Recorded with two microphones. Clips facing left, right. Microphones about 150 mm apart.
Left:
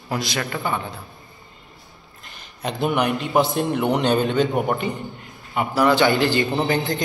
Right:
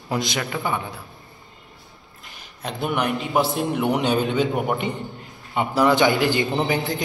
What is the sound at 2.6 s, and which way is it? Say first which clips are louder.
A man's voice: left 3 dB; centre (ahead or behind).